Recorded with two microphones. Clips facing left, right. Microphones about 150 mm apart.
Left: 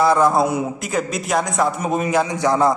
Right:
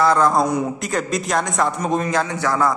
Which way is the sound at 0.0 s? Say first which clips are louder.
Left 1 dB; 10° left (ahead or behind).